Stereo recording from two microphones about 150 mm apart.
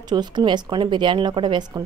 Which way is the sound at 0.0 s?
30° right (ahead or behind).